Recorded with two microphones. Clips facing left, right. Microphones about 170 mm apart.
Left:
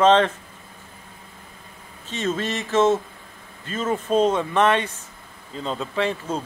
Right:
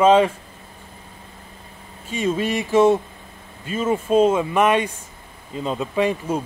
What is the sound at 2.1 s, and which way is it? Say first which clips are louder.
Speech: right 4 dB; 10° right (ahead or behind).